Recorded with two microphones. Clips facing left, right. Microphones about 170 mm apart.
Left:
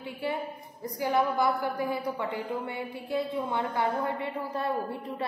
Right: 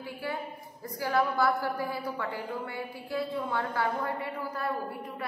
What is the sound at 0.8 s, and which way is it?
A woman's voice, 20° left (ahead or behind).